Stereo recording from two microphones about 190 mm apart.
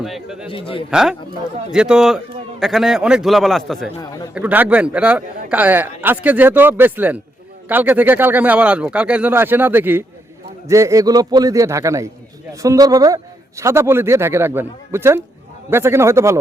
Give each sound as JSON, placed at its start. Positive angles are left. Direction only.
{"t": 0.0, "sound": "a man's voice", "side_deg": 0}
{"t": 0.4, "sound": "a man's voice", "side_deg": 30}
{"t": 0.9, "sound": "a man's voice", "side_deg": -5}